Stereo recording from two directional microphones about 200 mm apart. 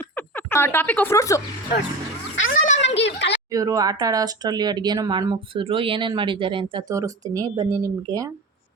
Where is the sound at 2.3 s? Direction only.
80° left.